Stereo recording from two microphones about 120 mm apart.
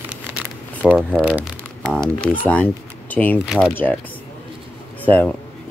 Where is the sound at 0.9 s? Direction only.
10° right (ahead or behind).